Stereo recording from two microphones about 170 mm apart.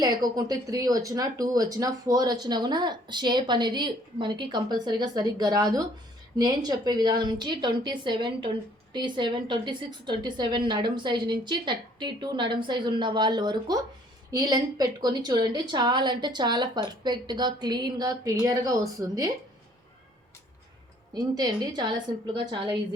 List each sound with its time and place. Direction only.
0.0 s a woman's voice: 20° right (ahead or behind)
21.1 s a woman's voice: 25° right (ahead or behind)